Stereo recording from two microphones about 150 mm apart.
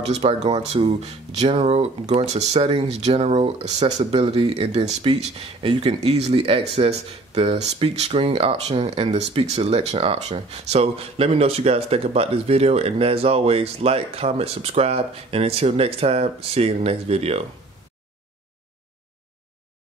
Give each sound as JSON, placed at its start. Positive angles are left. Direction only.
{"t": 0.1, "sound": "speech", "side_deg": -45}